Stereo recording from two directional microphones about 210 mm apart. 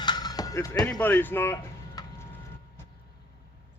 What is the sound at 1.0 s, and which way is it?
Tick-tock, 10° left (ahead or behind).